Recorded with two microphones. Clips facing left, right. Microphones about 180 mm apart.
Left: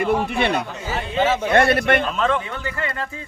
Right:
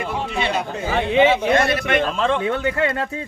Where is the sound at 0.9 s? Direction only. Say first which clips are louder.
Right 8 dB; 70° right (ahead or behind).